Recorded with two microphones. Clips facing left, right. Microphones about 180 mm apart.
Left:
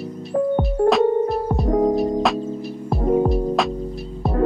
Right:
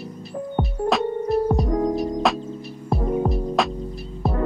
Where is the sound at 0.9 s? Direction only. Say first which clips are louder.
Even; centre (ahead or behind).